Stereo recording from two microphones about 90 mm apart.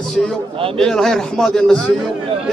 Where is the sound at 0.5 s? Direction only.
90° right.